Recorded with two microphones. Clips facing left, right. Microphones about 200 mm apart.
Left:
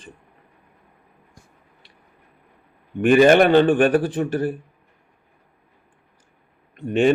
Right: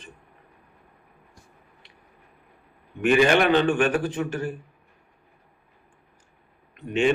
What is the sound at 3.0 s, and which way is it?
Speech, 45° left (ahead or behind).